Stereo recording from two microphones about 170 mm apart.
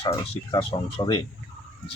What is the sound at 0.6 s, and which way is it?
Speech, 30° left (ahead or behind).